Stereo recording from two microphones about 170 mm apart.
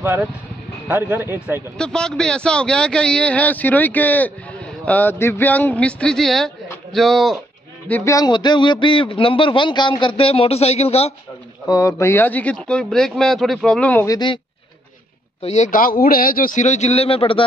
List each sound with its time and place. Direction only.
0.0 s speech: 10° right (ahead or behind)
1.8 s speech: 5° left (ahead or behind)
7.9 s a man's voice: 15° left (ahead or behind); by 11.1 s 35° left (ahead or behind)
11.6 s speech: 20° left (ahead or behind)
14.0 s a man's voice: 25° left (ahead or behind)
15.4 s a man's voice: 40° left (ahead or behind)